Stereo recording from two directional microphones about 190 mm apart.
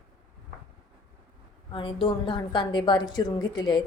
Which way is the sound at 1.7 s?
25° left (ahead or behind).